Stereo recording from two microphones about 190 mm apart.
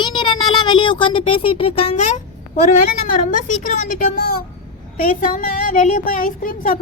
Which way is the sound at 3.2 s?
40° left (ahead or behind).